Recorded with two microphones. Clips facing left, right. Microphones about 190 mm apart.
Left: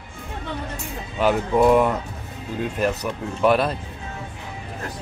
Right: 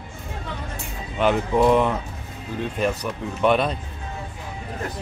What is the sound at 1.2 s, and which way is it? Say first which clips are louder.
Speech: left 1 dB; 5° left (ahead or behind).